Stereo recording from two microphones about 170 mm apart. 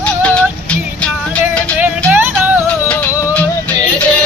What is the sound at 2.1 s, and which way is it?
Music, 10° right (ahead or behind).